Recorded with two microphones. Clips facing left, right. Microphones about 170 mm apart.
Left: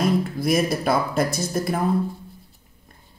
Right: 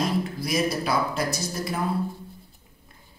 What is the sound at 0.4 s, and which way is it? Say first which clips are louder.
Speech: left 4 dB; 50° left (ahead or behind).